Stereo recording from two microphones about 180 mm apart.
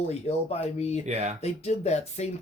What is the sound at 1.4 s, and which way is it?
Speech, 35° left (ahead or behind).